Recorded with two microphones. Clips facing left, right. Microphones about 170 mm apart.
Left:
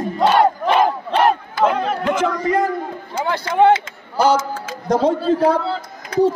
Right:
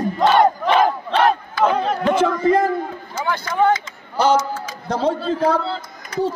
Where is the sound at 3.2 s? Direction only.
30° left (ahead or behind).